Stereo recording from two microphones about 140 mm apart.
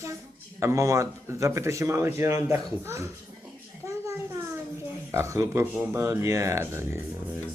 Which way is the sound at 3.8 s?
20° right (ahead or behind).